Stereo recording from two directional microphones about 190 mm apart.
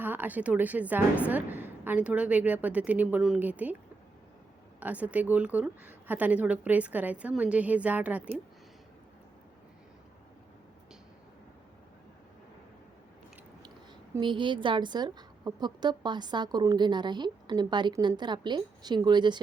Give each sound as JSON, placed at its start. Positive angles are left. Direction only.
{"t": 0.0, "sound": "a woman's voice", "side_deg": -10}
{"t": 4.8, "sound": "a woman's voice", "side_deg": -10}
{"t": 14.2, "sound": "a woman's voice", "side_deg": -25}